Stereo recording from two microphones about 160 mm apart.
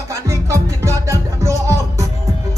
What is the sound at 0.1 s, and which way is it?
Music, 20° right (ahead or behind).